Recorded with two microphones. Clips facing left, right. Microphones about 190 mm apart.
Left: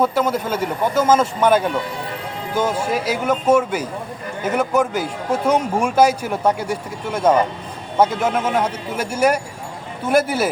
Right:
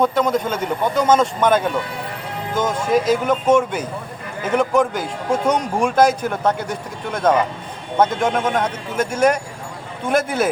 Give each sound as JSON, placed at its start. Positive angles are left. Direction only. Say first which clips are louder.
{"t": 0.0, "sound": "speech", "louder": "right 1 dB", "side_deg": 5}